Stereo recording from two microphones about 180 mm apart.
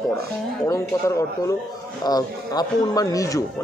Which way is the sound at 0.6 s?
15° left (ahead or behind).